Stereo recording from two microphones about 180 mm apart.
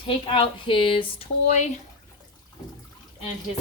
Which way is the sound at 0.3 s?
30° left (ahead or behind).